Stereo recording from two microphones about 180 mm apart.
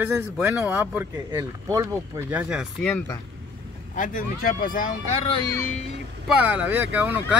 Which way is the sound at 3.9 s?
50° left (ahead or behind).